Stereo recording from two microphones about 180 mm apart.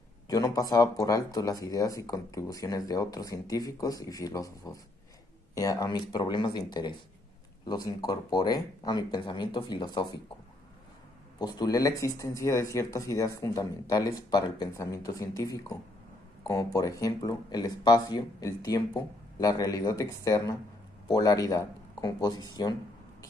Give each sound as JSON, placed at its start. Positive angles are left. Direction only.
{"t": 0.3, "sound": "speech", "side_deg": 20}
{"t": 11.3, "sound": "speech", "side_deg": 20}